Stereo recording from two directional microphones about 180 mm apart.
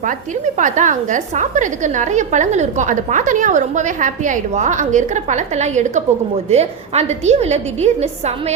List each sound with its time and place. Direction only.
0.0 s a woman's voice: 45° right (ahead or behind)